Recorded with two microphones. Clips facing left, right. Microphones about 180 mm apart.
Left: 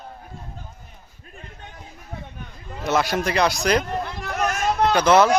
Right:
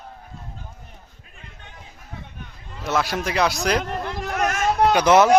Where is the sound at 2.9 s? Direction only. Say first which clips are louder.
Left 2 dB; centre (ahead or behind).